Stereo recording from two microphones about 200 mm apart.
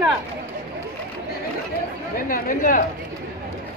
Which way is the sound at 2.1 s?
45° left (ahead or behind).